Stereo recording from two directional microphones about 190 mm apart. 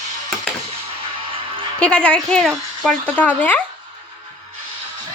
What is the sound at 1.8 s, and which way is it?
Speech, 5° left (ahead or behind).